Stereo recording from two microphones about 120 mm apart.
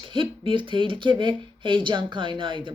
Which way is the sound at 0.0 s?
45° right (ahead or behind).